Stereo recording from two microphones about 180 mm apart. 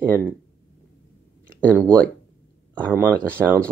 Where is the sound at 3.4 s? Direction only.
Centre (ahead or behind).